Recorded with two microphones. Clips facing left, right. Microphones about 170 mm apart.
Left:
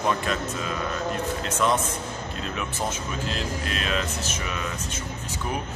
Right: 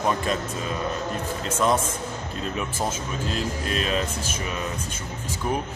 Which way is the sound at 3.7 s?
40° right (ahead or behind).